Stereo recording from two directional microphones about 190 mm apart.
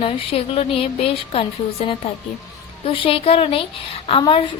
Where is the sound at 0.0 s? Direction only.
30° left (ahead or behind).